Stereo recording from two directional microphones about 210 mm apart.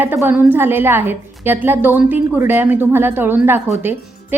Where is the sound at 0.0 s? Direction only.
10° right (ahead or behind).